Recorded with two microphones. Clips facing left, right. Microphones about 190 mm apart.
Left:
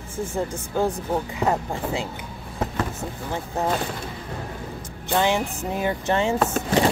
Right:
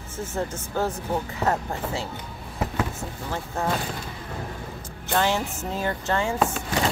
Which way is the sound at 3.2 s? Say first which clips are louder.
Left 2 dB; 20° left (ahead or behind).